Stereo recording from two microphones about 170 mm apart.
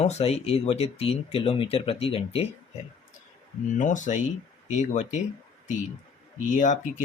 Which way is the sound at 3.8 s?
45° left (ahead or behind).